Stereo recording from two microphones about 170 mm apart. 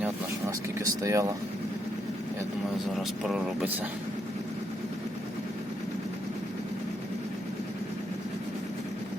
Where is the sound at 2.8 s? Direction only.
Centre (ahead or behind).